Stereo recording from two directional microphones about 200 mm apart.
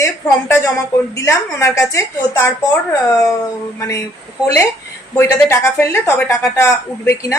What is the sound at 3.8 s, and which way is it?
Speech, 15° left (ahead or behind).